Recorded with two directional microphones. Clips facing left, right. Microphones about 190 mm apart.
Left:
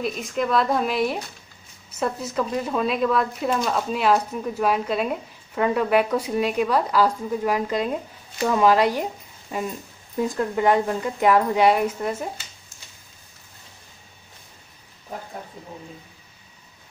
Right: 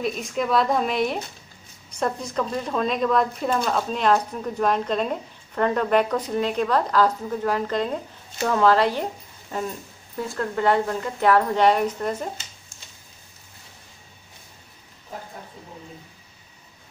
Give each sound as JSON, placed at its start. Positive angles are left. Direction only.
{"t": 0.0, "sound": "speech", "side_deg": 0}